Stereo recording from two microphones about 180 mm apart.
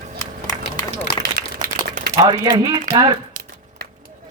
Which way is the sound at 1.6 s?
55° right (ahead or behind).